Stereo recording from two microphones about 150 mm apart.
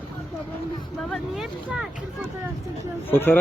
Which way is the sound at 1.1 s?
5° right (ahead or behind).